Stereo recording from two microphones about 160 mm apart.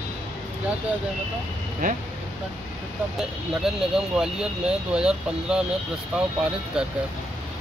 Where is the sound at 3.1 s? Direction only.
5° right (ahead or behind).